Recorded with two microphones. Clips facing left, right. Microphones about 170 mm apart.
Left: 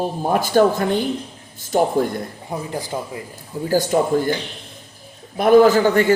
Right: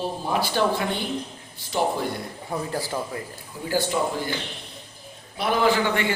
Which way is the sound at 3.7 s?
40° left (ahead or behind).